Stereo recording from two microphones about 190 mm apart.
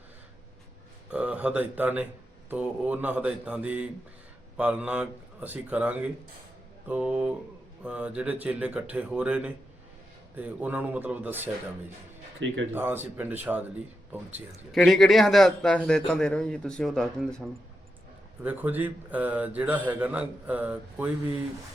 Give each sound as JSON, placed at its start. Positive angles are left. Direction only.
{"t": 1.1, "sound": "a man's voice", "side_deg": -5}
{"t": 12.4, "sound": "speech", "side_deg": -75}
{"t": 12.7, "sound": "a man's voice", "side_deg": -10}
{"t": 14.8, "sound": "a man's voice", "side_deg": 0}
{"t": 18.4, "sound": "a man's voice", "side_deg": -10}